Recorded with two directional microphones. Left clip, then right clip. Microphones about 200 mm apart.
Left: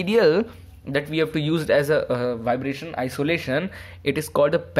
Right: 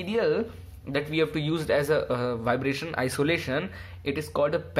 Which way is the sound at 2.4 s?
5° left (ahead or behind).